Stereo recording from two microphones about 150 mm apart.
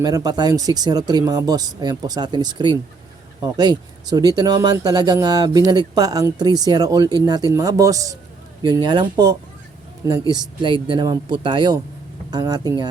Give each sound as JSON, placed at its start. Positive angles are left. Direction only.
{"t": 0.0, "sound": "speech", "side_deg": -25}